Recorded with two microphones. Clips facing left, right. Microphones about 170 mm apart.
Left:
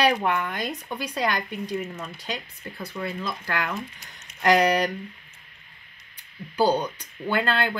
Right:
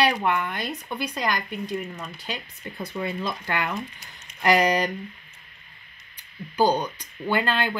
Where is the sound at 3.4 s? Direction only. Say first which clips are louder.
Right 1 dB; 15° right (ahead or behind).